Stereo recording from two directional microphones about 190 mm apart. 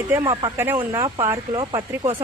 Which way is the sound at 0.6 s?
10° right (ahead or behind).